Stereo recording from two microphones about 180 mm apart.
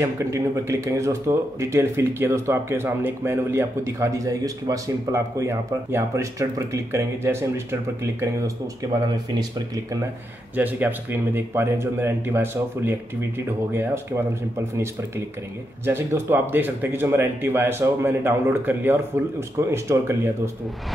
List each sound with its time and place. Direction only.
0.0 s speech: 15° right (ahead or behind)
9.1 s speech: 20° right (ahead or behind)
10.5 s speech: 10° right (ahead or behind)